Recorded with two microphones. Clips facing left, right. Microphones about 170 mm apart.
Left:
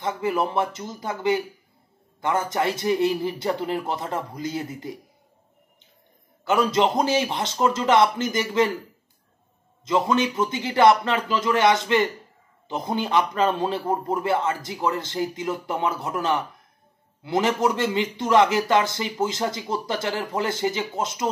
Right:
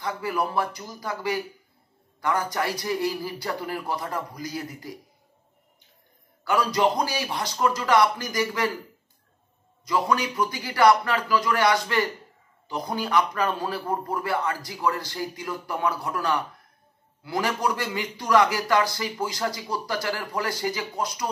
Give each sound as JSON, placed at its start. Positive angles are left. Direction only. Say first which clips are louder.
{"t": 0.0, "sound": "a man's voice", "louder": "left 3 dB", "side_deg": 20}
{"t": 6.4, "sound": "a man's voice", "louder": "left 2 dB", "side_deg": 25}
{"t": 9.8, "sound": "a man's voice", "louder": "left 3 dB", "side_deg": 25}